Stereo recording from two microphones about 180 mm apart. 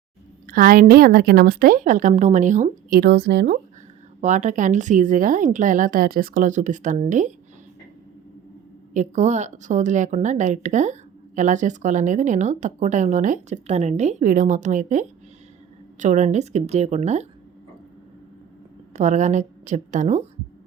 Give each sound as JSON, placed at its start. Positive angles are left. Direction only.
{"t": 0.4, "sound": "speech", "side_deg": -50}
{"t": 3.0, "sound": "speech", "side_deg": -70}
{"t": 4.2, "sound": "speech", "side_deg": -40}
{"t": 8.9, "sound": "a woman's voice", "side_deg": -40}
{"t": 18.9, "sound": "a woman's voice", "side_deg": -40}